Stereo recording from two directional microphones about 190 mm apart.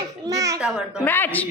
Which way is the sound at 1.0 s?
10° left (ahead or behind).